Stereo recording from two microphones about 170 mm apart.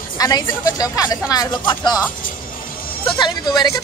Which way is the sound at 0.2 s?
20° left (ahead or behind).